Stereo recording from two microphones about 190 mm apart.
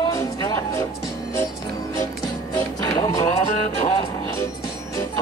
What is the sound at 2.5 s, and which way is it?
Music, 20° left (ahead or behind).